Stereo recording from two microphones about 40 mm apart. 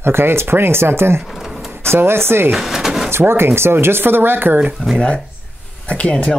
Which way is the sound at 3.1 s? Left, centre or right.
Right.